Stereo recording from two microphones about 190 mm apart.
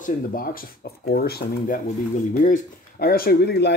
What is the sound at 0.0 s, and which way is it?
Speech, 50° left (ahead or behind).